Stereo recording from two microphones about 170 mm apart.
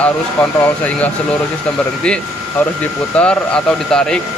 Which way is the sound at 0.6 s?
10° left (ahead or behind).